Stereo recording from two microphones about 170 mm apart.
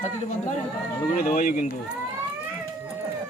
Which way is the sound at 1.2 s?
55° left (ahead or behind).